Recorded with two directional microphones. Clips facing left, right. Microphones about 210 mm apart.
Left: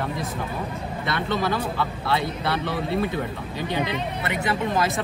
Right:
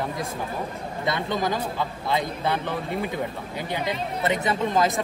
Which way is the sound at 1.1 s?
15° right (ahead or behind).